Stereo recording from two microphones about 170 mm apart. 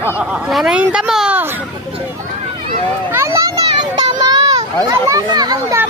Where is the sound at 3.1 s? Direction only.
15° right (ahead or behind).